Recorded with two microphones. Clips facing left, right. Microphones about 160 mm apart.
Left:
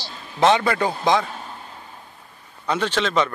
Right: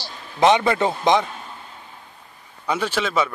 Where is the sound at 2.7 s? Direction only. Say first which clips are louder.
Left 1 dB; 10° right (ahead or behind).